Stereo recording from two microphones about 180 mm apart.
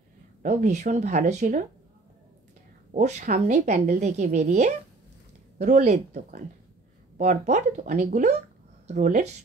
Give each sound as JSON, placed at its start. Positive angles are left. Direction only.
{"t": 0.4, "sound": "speech", "side_deg": -45}
{"t": 2.9, "sound": "speech", "side_deg": -40}